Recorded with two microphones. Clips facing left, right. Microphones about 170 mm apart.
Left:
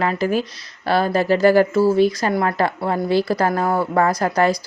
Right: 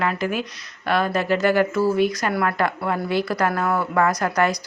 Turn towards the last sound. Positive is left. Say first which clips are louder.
# left 3 dB
turn(degrees=30)  # may be behind; listen again after turning